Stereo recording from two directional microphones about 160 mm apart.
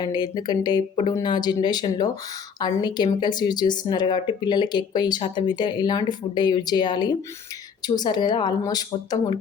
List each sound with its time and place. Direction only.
0.0 s speech: 25° left (ahead or behind)